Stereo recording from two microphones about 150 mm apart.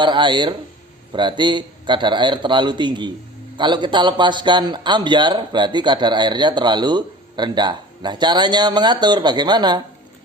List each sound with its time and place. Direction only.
0.0 s speech: 30° right (ahead or behind)